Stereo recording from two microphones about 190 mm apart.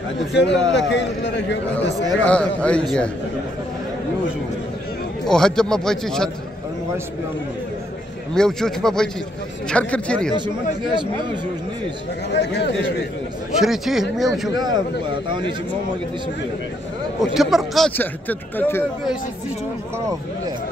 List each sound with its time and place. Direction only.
0.3 s a man's voice: 65° left (ahead or behind)
2.2 s speech: 5° left (ahead or behind)
5.2 s speech: 5° left (ahead or behind)
8.4 s speech: centre (ahead or behind)
12.3 s speech: 65° left (ahead or behind)
13.6 s speech: centre (ahead or behind)
14.5 s a man's voice: 20° right (ahead or behind)
17.2 s speech: centre (ahead or behind)